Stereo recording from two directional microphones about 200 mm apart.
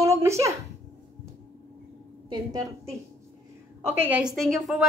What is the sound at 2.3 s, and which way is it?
Speech, 20° right (ahead or behind).